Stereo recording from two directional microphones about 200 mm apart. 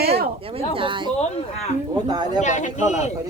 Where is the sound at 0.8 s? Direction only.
25° right (ahead or behind).